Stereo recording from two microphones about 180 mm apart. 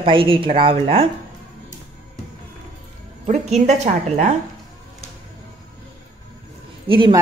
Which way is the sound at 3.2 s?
40° right (ahead or behind).